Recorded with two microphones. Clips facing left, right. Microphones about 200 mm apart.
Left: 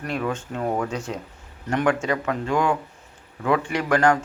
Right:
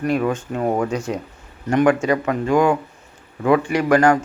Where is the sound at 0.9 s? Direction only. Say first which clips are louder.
Right 5 dB; 15° right (ahead or behind).